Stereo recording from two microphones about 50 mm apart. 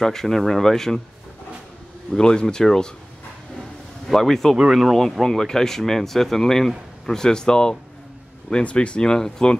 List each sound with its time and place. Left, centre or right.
0.0 s speech: centre
2.1 s speech: centre
4.1 s speech: centre